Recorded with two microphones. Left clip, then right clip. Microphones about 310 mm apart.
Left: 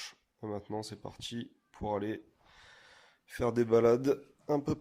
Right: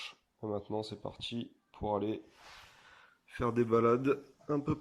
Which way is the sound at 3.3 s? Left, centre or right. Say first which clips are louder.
Left 2 dB; centre.